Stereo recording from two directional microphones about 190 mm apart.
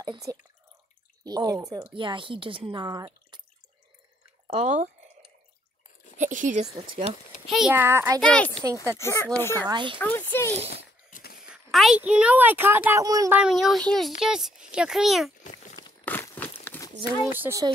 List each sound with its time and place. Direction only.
0.0 s speech: 20° right (ahead or behind)
4.5 s speech: 35° right (ahead or behind)
6.1 s speech: 40° right (ahead or behind)
7.1 s a child's voice: 30° left (ahead or behind)
7.4 s a child's voice: centre (ahead or behind)
7.7 s a child's voice: 10° right (ahead or behind)
8.2 s a child's voice: 5° left (ahead or behind)
9.7 s speech: 25° right (ahead or behind)
9.9 s speech: 10° left (ahead or behind)
11.1 s a sound: 45° left (ahead or behind)
11.4 s a child's voice: centre (ahead or behind); by 13.4 s 15° right (ahead or behind)
13.4 s a child's voice: centre (ahead or behind)
16.1 s a sound: 10° left (ahead or behind)
17.3 s a child's voice: 10° right (ahead or behind)